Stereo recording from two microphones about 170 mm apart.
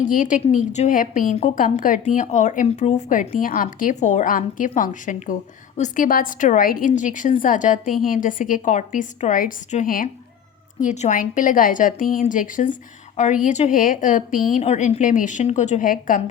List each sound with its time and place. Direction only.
0.0 s a woman's voice: 50° left (ahead or behind)